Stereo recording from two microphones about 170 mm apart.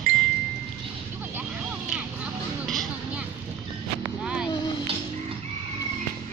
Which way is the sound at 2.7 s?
Centre (ahead or behind).